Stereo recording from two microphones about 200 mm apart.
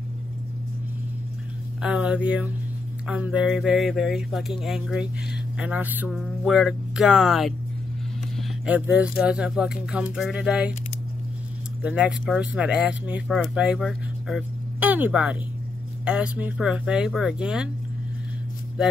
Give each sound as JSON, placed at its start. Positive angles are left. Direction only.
{"t": 1.8, "sound": "speech", "side_deg": -5}
{"t": 11.8, "sound": "speech", "side_deg": -5}